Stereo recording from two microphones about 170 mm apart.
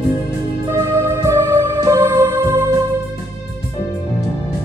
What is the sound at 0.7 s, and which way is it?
Music, 15° right (ahead or behind).